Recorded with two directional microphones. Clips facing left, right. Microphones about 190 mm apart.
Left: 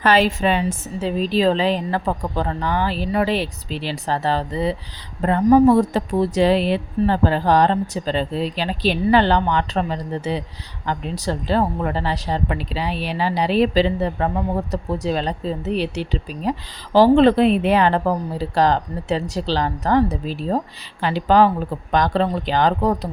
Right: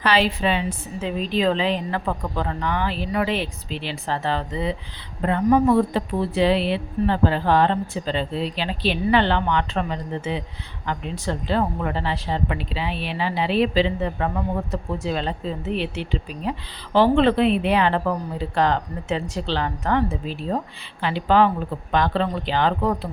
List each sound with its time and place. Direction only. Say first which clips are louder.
0.0 s speech: left 3 dB; 45° left (ahead or behind)